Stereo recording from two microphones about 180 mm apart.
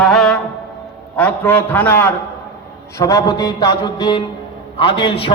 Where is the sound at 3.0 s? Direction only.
20° left (ahead or behind).